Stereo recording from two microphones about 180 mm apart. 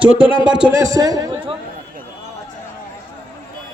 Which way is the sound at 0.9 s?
20° right (ahead or behind).